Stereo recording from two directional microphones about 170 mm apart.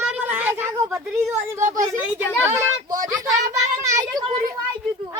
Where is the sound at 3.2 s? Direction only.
20° right (ahead or behind).